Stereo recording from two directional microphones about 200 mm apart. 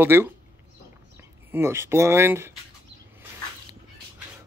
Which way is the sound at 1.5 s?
10° right (ahead or behind).